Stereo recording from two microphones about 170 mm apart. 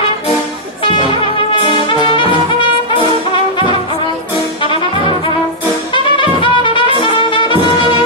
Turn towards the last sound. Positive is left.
turn(degrees=30)  # may be behind; listen again after turning